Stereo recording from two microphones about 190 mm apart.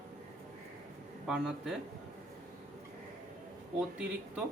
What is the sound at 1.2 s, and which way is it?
Speech, 5° right (ahead or behind).